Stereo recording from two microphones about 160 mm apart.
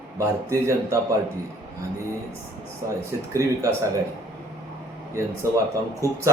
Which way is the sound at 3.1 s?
20° right (ahead or behind).